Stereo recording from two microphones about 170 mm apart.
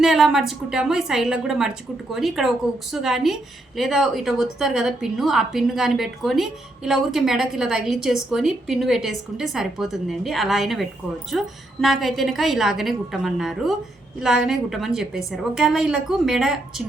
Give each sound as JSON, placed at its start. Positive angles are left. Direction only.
{"t": 0.0, "sound": "a woman's voice", "side_deg": 0}